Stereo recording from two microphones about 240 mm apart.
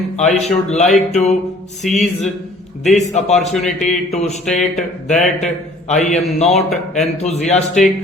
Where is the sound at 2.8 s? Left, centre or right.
Left.